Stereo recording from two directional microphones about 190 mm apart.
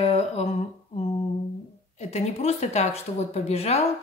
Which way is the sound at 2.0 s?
35° left (ahead or behind).